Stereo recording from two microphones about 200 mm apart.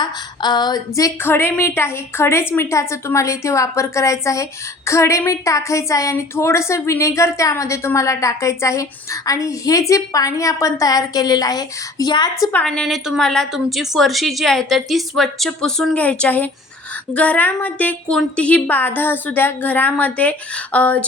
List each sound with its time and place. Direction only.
0.0 s a woman's voice: 20° left (ahead or behind)